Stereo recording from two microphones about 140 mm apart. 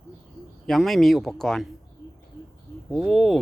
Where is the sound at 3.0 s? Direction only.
Centre (ahead or behind).